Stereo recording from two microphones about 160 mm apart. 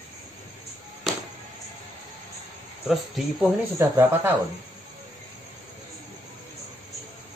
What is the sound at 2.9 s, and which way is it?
Speech, centre (ahead or behind).